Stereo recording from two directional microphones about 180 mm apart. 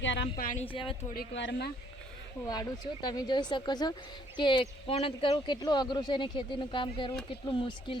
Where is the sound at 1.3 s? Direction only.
75° left (ahead or behind).